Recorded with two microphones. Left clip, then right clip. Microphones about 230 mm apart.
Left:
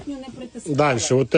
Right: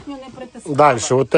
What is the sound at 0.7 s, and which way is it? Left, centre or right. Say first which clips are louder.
Speech: right 6 dB; right.